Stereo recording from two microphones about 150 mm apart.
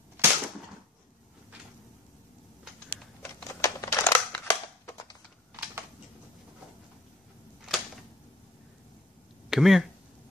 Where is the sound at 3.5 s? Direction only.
20° left (ahead or behind).